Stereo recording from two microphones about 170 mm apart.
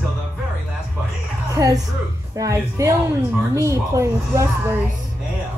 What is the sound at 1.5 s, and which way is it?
A woman's voice, 20° right (ahead or behind).